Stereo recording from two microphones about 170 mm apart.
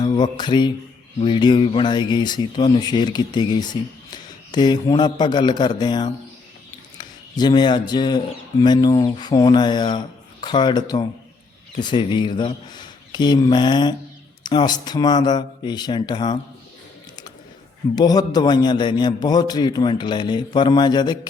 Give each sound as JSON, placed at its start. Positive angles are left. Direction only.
{"t": 0.0, "sound": "mantra", "side_deg": 25}
{"t": 1.2, "sound": "a man's voice", "side_deg": 30}
{"t": 7.3, "sound": "a man's voice", "side_deg": 25}
{"t": 17.9, "sound": "a man's voice", "side_deg": 25}